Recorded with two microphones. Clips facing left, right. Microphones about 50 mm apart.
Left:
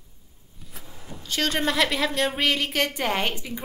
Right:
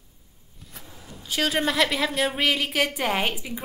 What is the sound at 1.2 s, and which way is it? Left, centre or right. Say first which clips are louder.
A woman's voice: right 1 dB; centre.